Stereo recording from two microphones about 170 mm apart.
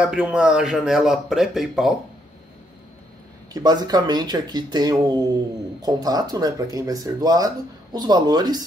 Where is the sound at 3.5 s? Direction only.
25° right (ahead or behind).